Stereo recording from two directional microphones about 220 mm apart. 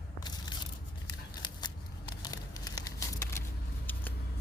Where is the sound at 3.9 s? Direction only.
10° left (ahead or behind).